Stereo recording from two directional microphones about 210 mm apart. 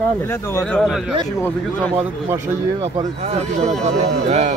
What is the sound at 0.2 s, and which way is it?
Speech, 10° left (ahead or behind).